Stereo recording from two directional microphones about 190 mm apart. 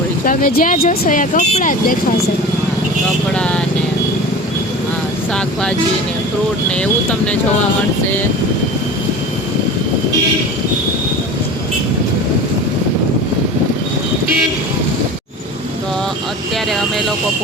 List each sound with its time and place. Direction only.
0.3 s speech: 45° left (ahead or behind)
3.3 s speech: 5° left (ahead or behind)
6.7 s speech: 5° left (ahead or behind)